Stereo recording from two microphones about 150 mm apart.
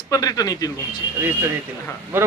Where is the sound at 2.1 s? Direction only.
15° right (ahead or behind).